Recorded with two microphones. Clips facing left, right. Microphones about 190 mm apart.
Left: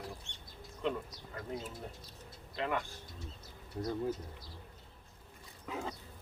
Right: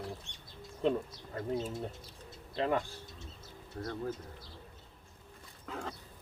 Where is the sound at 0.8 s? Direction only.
30° right (ahead or behind).